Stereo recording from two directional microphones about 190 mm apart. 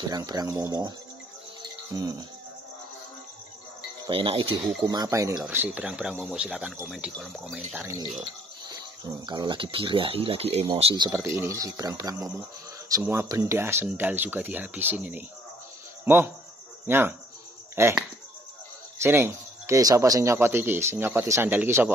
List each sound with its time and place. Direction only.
0.1 s speech: 20° right (ahead or behind)
1.9 s speech: 20° right (ahead or behind)
4.1 s speech: 25° right (ahead or behind); by 8.0 s 10° right (ahead or behind)
9.0 s speech: 25° right (ahead or behind)
11.1 s speech: 15° right (ahead or behind)
16.8 s cricket: 10° right (ahead or behind)
17.7 s speech: 15° right (ahead or behind)
19.0 s speech: 15° right (ahead or behind)